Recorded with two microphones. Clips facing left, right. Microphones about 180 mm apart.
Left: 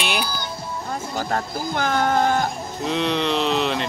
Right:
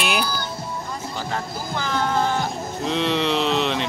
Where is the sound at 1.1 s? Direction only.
50° left (ahead or behind).